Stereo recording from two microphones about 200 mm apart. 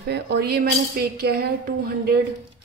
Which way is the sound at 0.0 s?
55° right (ahead or behind).